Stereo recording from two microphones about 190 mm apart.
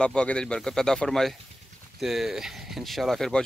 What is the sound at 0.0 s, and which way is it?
Speech, 5° left (ahead or behind).